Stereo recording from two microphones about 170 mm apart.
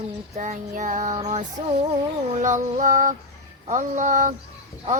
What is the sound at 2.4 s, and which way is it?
Music, 45° right (ahead or behind).